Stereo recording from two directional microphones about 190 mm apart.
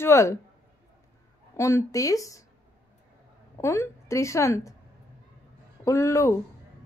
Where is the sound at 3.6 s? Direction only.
15° left (ahead or behind).